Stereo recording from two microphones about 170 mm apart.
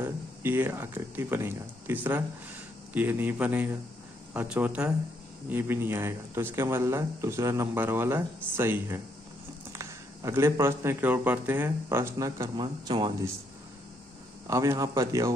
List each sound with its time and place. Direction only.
0.0 s speech: 15° right (ahead or behind)
14.5 s a man's voice: 20° right (ahead or behind)